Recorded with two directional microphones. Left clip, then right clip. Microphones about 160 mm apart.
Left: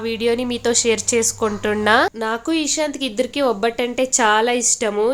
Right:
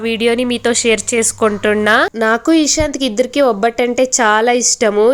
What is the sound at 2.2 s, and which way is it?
Speech, 35° right (ahead or behind).